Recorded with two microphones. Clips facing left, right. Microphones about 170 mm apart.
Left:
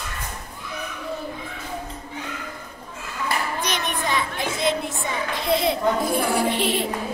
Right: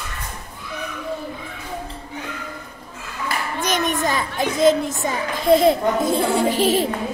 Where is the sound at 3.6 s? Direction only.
45° right (ahead or behind).